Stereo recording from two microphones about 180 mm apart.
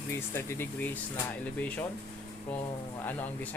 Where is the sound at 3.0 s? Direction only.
10° left (ahead or behind).